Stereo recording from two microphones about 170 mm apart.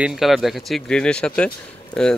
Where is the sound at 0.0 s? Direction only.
Centre (ahead or behind).